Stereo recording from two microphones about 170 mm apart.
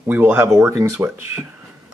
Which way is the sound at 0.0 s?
10° right (ahead or behind).